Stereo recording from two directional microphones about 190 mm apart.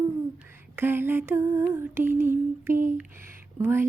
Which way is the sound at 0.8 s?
10° right (ahead or behind).